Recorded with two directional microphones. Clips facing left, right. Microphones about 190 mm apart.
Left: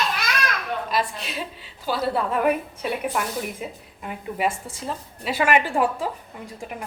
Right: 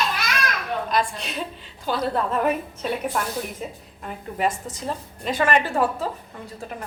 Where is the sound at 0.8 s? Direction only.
5° left (ahead or behind).